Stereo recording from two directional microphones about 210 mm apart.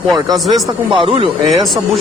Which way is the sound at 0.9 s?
25° right (ahead or behind).